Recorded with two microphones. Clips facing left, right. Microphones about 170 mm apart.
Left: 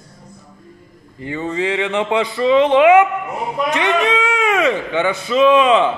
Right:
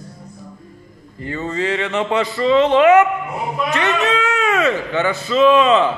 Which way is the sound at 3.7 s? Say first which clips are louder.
Left 2 dB; 15° left (ahead or behind).